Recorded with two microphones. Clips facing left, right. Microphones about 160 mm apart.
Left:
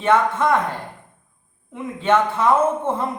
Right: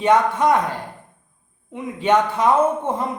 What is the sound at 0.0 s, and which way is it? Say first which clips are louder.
Speech: right 1 dB; 15° right (ahead or behind).